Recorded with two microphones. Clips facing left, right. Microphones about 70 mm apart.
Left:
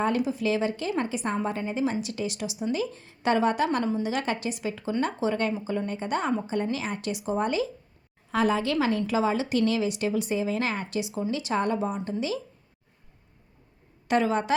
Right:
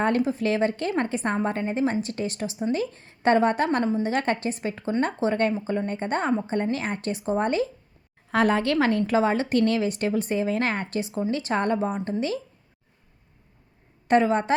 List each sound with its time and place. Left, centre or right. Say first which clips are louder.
0.2 s a woman's voice: right 3 dB; right
8.3 s a woman's voice: right 3 dB; right
14.1 s a woman's voice: right 4 dB; right